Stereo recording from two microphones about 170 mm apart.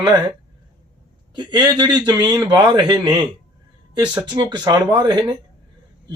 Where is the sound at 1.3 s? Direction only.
25° right (ahead or behind).